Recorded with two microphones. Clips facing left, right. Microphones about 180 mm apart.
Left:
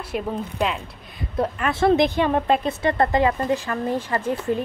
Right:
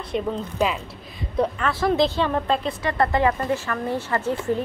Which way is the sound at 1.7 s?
25° left (ahead or behind).